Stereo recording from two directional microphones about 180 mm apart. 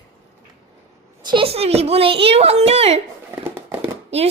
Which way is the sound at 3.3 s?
10° right (ahead or behind).